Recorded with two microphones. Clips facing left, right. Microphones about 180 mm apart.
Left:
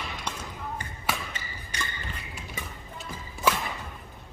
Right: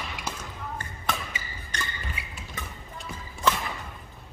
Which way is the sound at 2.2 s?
10° right (ahead or behind).